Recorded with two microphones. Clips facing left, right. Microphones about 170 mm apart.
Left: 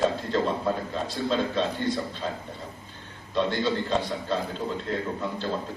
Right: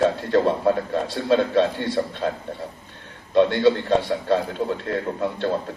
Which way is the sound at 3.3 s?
60° right (ahead or behind).